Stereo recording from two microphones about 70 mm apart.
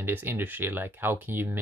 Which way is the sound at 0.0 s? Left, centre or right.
Right.